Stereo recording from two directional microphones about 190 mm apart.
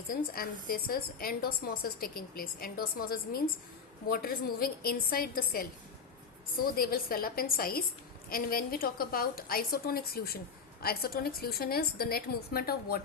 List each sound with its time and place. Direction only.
0.1 s a woman's voice: 50° left (ahead or behind)
6.7 s a woman's voice: 50° left (ahead or behind)